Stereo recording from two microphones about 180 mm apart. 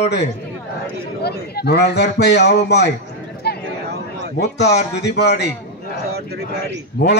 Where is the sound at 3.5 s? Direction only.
65° left (ahead or behind).